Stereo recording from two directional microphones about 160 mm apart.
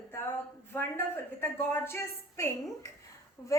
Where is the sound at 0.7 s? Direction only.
15° left (ahead or behind).